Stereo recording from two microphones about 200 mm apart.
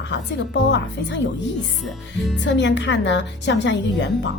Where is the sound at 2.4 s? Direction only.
60° left (ahead or behind).